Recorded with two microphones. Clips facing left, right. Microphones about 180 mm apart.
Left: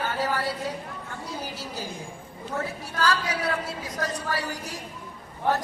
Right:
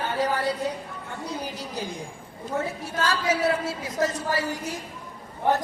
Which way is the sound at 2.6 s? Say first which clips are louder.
Right 2 dB; 25° right (ahead or behind).